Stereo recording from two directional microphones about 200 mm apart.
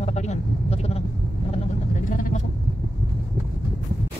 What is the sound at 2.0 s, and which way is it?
Speech, 40° left (ahead or behind).